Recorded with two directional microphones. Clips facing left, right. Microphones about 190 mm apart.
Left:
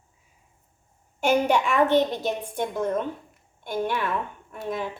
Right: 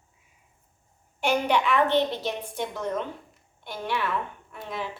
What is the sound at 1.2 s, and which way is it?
A woman's voice, 45° left (ahead or behind).